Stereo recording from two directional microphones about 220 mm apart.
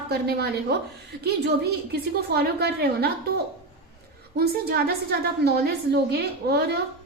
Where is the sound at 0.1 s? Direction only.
45° right (ahead or behind).